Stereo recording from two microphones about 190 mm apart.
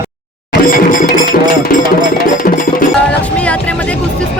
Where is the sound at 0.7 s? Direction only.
45° left (ahead or behind).